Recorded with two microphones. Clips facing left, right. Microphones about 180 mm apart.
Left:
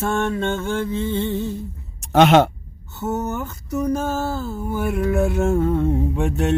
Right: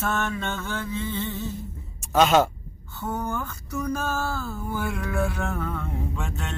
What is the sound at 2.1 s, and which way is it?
Music, 70° left (ahead or behind).